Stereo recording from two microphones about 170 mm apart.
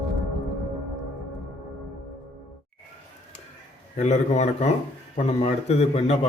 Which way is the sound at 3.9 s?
45° left (ahead or behind).